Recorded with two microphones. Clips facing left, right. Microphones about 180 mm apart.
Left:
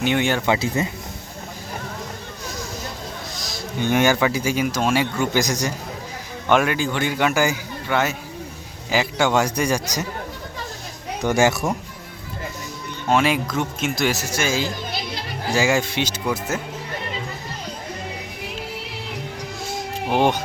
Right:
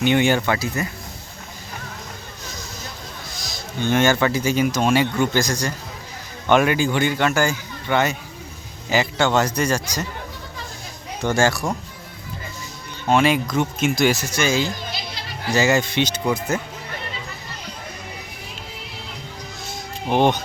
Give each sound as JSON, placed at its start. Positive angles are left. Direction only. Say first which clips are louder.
{"t": 0.0, "sound": "speech", "louder": "right 3 dB", "side_deg": 0}
{"t": 0.4, "sound": "speech", "louder": "left 2 dB", "side_deg": 20}
{"t": 3.8, "sound": "speech", "louder": "even", "side_deg": 15}
{"t": 5.4, "sound": "speech", "louder": "even", "side_deg": 15}
{"t": 6.5, "sound": "speech", "louder": "right 2 dB", "side_deg": 0}
{"t": 11.2, "sound": "speech", "louder": "left 1 dB", "side_deg": 15}
{"t": 13.1, "sound": "speech", "louder": "right 2 dB", "side_deg": 5}
{"t": 20.1, "sound": "speech", "louder": "right 1 dB", "side_deg": 5}